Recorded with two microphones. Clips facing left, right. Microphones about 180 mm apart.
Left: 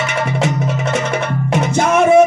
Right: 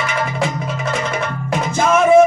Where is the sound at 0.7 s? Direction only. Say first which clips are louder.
Left 3 dB; 70° left (ahead or behind).